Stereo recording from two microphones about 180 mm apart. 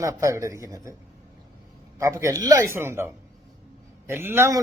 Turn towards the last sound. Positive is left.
turn(degrees=-15)  # may be behind; listen again after turning